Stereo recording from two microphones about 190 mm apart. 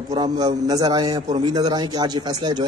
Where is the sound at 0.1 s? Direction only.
20° right (ahead or behind).